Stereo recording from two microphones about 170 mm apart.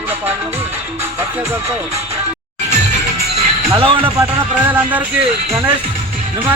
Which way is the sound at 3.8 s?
30° right (ahead or behind).